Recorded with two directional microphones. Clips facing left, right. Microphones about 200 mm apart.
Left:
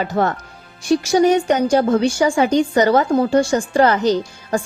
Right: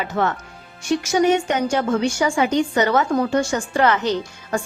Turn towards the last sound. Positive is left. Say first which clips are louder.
# left 3 dB
turn(degrees=35)  # may be behind; listen again after turning